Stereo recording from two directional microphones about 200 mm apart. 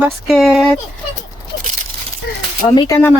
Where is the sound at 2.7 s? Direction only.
20° left (ahead or behind).